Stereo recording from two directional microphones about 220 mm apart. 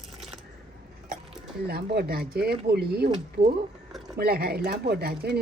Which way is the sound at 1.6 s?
45° right (ahead or behind).